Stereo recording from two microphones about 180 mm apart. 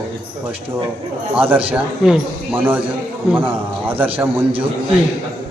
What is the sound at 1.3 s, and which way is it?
A man's voice, 10° right (ahead or behind).